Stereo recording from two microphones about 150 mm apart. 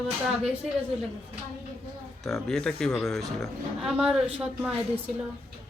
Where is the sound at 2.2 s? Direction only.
Centre (ahead or behind).